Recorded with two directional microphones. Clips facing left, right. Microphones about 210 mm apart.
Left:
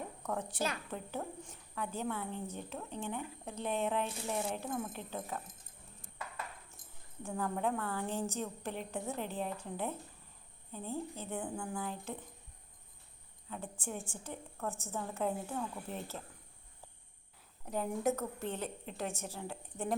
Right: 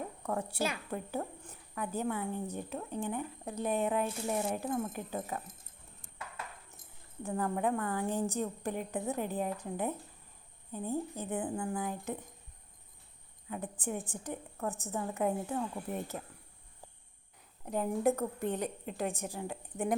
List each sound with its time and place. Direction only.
0.2 s a woman's voice: 5° right (ahead or behind)
7.3 s a woman's voice: 5° right (ahead or behind)
11.3 s speech: 5° right (ahead or behind)
13.5 s a woman's voice: 15° right (ahead or behind)
14.9 s a woman's voice: 5° right (ahead or behind)
18.2 s a woman's voice: 15° right (ahead or behind)